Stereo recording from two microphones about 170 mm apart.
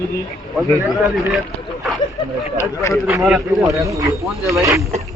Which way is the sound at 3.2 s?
5° right (ahead or behind).